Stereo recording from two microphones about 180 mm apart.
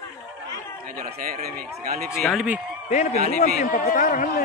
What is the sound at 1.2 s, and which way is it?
Speech, 55° right (ahead or behind).